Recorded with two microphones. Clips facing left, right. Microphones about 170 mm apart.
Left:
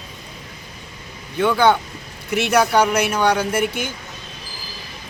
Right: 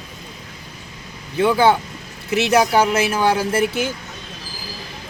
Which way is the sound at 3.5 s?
30° right (ahead or behind).